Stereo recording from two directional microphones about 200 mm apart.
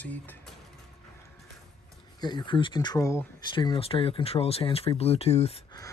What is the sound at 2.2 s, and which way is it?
Speech, 20° left (ahead or behind).